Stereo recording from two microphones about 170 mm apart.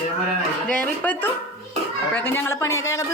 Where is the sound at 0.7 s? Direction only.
10° left (ahead or behind).